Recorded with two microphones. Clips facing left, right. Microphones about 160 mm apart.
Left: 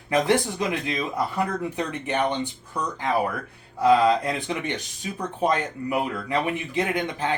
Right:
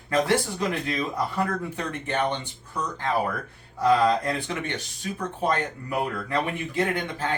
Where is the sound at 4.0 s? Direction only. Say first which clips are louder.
Left 1 dB; 15° left (ahead or behind).